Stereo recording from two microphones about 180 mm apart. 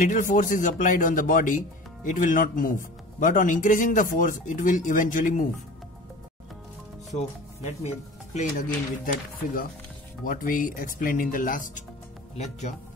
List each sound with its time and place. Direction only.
0.0 s speech: 45° left (ahead or behind)
7.1 s speech: 40° left (ahead or behind)